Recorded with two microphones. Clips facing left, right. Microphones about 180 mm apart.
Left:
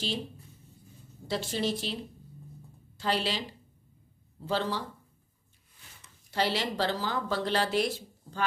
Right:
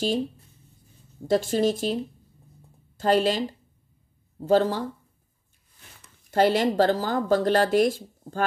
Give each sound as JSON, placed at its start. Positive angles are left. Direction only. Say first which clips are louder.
{"t": 1.2, "sound": "speech", "louder": "right 9 dB", "side_deg": -45}
{"t": 3.0, "sound": "speech", "louder": "right 9 dB", "side_deg": -45}
{"t": 6.3, "sound": "speech", "louder": "right 10 dB", "side_deg": -50}